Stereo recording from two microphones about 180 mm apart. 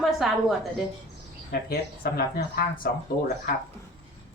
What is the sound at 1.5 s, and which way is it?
Speech, 55° left (ahead or behind).